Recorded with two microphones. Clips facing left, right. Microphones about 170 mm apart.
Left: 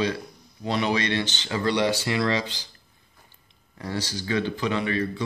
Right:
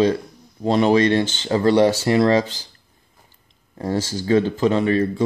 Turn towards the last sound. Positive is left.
turn(degrees=-40)  # may be behind; listen again after turning